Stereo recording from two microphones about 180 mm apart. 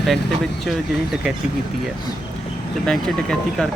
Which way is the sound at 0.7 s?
Centre (ahead or behind).